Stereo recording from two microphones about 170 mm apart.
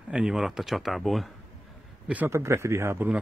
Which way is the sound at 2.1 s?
10° right (ahead or behind).